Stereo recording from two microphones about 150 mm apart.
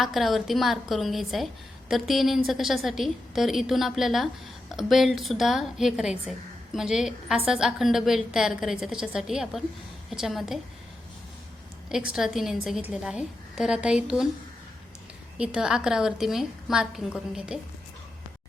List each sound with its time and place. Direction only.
0.0 s a woman's voice: centre (ahead or behind)
11.9 s a woman's voice: 5° right (ahead or behind)
15.4 s a woman's voice: 5° right (ahead or behind)